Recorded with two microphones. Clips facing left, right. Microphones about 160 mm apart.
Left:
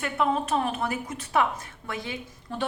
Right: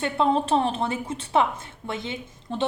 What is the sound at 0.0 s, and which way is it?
A woman's voice, 30° right (ahead or behind).